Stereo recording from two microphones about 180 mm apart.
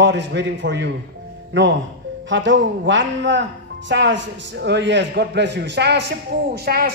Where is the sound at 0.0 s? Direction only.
75° right (ahead or behind).